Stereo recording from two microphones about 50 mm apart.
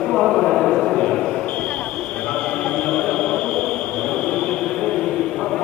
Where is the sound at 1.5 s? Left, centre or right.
Left.